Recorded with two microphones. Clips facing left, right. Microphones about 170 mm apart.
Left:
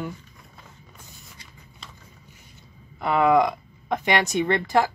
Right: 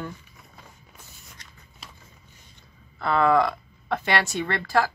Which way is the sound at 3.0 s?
15° left (ahead or behind).